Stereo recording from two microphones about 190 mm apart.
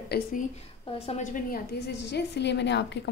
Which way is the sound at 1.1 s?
40° left (ahead or behind).